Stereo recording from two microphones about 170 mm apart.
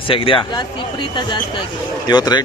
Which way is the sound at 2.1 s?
25° left (ahead or behind).